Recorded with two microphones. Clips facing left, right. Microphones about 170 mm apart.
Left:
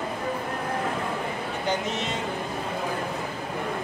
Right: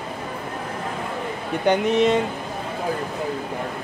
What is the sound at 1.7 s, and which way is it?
Speech, 60° right (ahead or behind).